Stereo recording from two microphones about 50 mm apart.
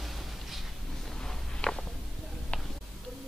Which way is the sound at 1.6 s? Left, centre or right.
Centre.